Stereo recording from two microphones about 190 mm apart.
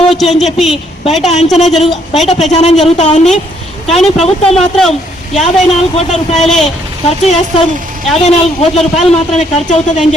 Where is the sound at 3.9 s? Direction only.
Centre (ahead or behind).